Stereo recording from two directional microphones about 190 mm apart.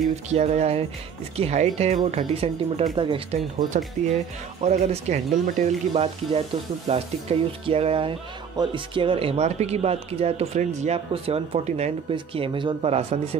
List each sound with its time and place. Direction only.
0.3 s speech: 35° right (ahead or behind)